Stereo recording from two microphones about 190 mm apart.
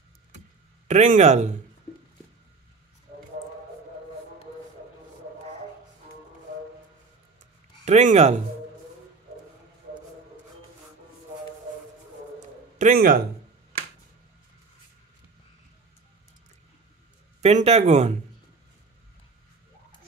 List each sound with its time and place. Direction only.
0.8 s speech: 40° right (ahead or behind)
7.8 s speech: 35° right (ahead or behind)
12.4 s a sound: 40° right (ahead or behind)
17.4 s speech: 35° right (ahead or behind)